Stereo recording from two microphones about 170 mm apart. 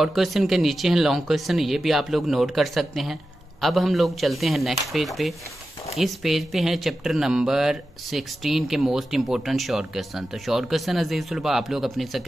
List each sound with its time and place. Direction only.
0.0 s speech: centre (ahead or behind)